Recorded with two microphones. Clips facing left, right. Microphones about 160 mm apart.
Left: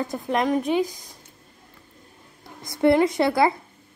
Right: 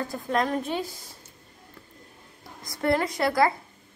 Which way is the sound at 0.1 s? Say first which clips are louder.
Left 3 dB; 15° left (ahead or behind).